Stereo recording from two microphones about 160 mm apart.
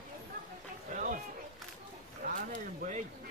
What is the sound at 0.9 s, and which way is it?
Run, 60° right (ahead or behind).